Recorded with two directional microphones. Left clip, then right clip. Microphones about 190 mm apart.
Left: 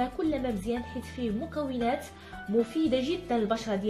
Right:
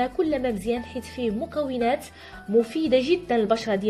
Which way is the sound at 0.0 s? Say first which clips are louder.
Right 6 dB; 40° right (ahead or behind).